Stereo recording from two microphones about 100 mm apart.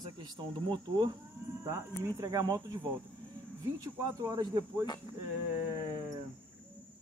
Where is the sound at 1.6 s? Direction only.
30° right (ahead or behind).